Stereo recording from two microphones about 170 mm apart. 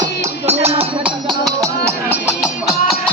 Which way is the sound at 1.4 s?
20° right (ahead or behind).